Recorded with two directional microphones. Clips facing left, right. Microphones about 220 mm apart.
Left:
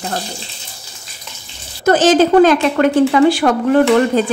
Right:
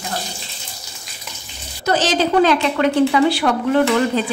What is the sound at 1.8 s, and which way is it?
A woman's voice, 50° left (ahead or behind).